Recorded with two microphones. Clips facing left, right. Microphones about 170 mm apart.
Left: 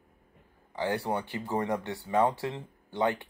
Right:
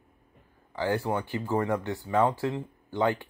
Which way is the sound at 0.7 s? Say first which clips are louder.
Right 2 dB; 20° left (ahead or behind).